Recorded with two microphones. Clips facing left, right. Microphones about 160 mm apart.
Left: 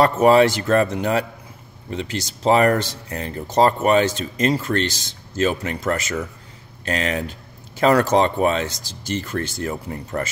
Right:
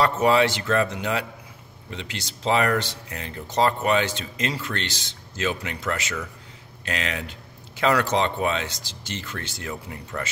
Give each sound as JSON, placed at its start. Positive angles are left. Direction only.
{"t": 0.0, "sound": "speech", "side_deg": 45}